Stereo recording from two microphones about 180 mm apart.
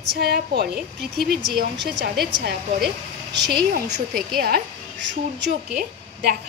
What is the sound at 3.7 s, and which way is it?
Speech, 70° right (ahead or behind).